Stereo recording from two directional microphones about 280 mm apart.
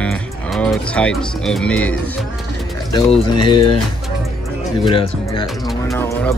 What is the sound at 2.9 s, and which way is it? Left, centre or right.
Speech, centre.